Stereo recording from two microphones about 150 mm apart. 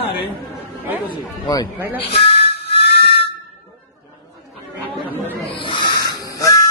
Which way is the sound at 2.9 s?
90° left.